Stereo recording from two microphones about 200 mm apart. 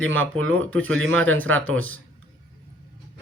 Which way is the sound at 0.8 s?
80° right.